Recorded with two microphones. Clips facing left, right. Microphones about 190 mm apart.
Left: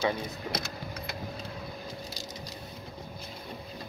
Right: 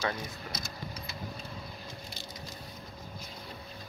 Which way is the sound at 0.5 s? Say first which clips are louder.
Left 5 dB; 65° left (ahead or behind).